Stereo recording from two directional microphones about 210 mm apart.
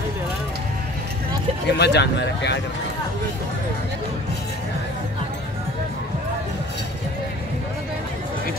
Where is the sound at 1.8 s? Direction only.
55° left (ahead or behind).